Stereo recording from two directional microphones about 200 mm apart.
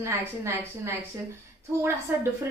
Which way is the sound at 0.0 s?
15° right (ahead or behind).